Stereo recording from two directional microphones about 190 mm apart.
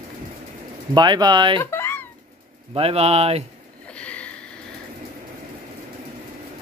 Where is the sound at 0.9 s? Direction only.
20° right (ahead or behind).